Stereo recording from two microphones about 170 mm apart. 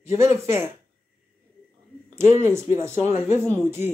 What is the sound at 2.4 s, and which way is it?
Speech, 15° right (ahead or behind).